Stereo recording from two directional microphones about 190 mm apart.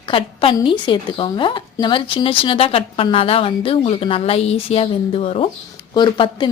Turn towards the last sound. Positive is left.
turn(degrees=25)  # may be behind; listen again after turning